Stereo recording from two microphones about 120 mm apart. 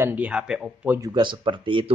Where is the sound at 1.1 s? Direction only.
40° right (ahead or behind).